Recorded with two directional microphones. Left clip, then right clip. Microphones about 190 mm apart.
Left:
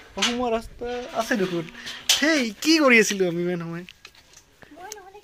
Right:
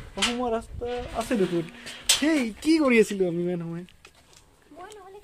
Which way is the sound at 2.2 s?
5° left (ahead or behind).